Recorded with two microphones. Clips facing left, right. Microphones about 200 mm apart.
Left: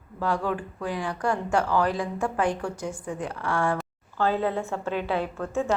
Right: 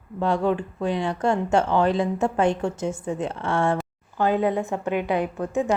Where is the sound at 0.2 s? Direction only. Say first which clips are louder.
Right 5 dB; 25° right (ahead or behind).